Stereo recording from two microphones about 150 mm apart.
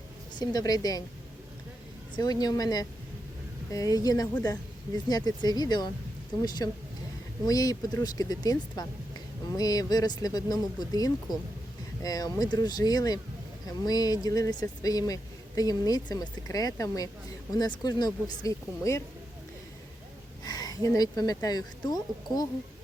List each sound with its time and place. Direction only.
0.3 s speech: 25° left (ahead or behind)
2.1 s speech: 25° left (ahead or behind)
7.4 s speech: 25° left (ahead or behind)
20.4 s a woman's voice: 25° left (ahead or behind)